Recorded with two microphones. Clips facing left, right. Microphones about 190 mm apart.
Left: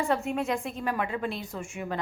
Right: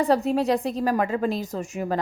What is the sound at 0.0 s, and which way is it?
A woman's voice, 35° right (ahead or behind).